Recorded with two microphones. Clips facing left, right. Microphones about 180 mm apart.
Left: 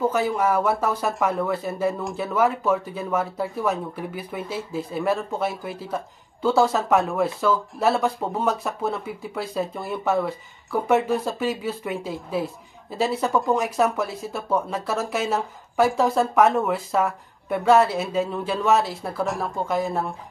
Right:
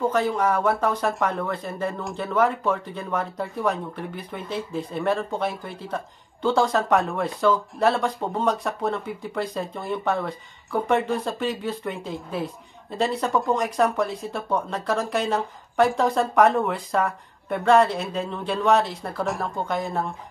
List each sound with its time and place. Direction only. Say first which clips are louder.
0.1 s speech: even; 10° left (ahead or behind)